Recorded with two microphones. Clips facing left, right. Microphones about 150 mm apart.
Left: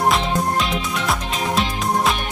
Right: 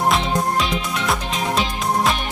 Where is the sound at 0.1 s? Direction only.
Centre (ahead or behind).